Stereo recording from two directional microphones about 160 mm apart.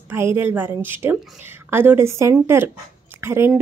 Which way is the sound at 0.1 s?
15° right (ahead or behind).